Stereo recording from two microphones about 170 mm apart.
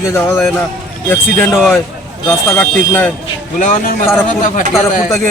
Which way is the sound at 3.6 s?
50° left (ahead or behind).